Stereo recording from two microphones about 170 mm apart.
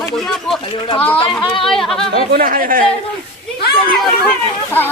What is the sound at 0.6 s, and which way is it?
Speech, 30° left (ahead or behind).